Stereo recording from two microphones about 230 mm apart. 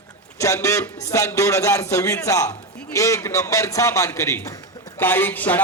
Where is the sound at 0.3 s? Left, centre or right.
Centre.